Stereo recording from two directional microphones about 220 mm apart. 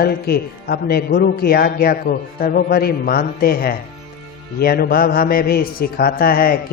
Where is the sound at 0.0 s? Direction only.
45° left (ahead or behind).